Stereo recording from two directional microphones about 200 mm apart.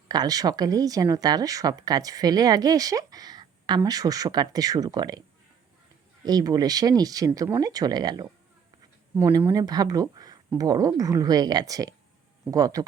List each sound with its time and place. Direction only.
0.1 s speech: 20° right (ahead or behind)
6.2 s a woman's voice: 20° right (ahead or behind)